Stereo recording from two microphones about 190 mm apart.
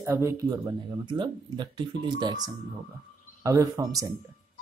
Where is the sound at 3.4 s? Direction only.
15° right (ahead or behind).